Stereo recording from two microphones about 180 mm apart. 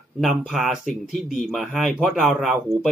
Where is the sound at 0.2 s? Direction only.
Centre (ahead or behind).